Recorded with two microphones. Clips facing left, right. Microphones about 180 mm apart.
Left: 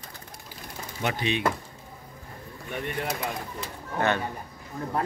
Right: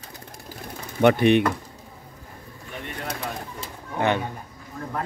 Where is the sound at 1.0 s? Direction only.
60° right (ahead or behind).